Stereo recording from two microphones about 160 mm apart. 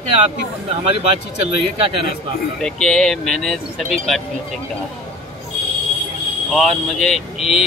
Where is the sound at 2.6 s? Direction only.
5° left (ahead or behind).